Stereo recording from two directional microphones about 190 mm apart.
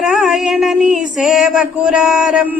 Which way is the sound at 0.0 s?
Centre (ahead or behind).